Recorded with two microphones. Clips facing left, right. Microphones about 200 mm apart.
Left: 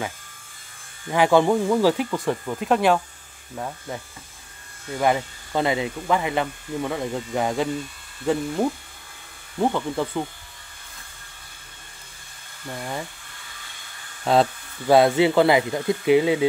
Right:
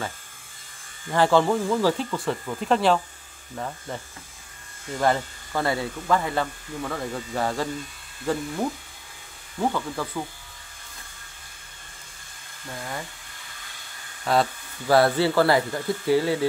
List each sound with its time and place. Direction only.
1.1 s speech: 15° left (ahead or behind)
9.6 s speech: 20° left (ahead or behind)
12.7 s speech: 25° left (ahead or behind)
14.2 s speech: 25° left (ahead or behind)